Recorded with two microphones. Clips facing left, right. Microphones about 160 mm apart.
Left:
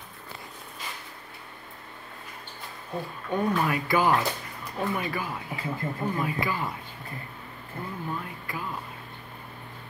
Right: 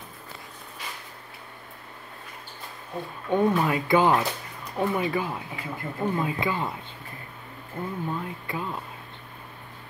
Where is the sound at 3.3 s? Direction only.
20° right (ahead or behind).